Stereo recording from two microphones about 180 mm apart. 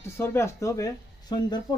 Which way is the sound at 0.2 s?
15° left (ahead or behind).